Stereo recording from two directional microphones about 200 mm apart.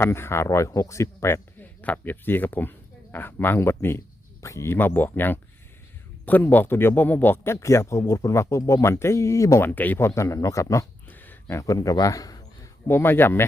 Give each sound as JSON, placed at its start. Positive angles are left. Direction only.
{"t": 0.0, "sound": "a man's voice", "side_deg": 10}